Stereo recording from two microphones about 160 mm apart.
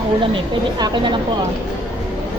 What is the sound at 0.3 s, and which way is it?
Speech, 30° right (ahead or behind).